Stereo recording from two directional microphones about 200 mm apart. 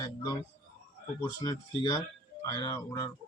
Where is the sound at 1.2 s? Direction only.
15° left (ahead or behind).